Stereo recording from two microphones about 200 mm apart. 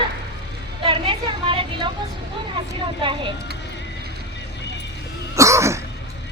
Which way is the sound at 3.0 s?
25° right (ahead or behind).